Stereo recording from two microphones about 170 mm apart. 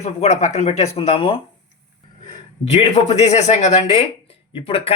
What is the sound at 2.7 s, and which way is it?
Speech, 40° left (ahead or behind).